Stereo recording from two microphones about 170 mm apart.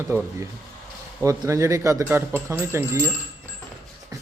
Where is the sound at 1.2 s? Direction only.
20° right (ahead or behind).